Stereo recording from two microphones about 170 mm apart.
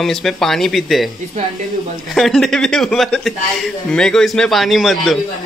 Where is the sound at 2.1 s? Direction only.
Centre (ahead or behind).